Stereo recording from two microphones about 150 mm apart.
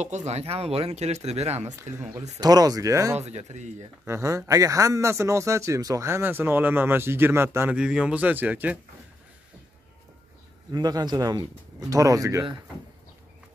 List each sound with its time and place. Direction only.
0.0 s speech: 50° right (ahead or behind)
2.0 s speech: 25° right (ahead or behind)
3.2 s speech: 45° right (ahead or behind)
4.0 s a man's voice: 20° right (ahead or behind)
10.7 s speech: 25° right (ahead or behind)